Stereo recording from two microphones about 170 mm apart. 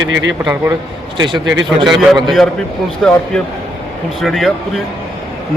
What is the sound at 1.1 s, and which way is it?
Speech, 25° right (ahead or behind).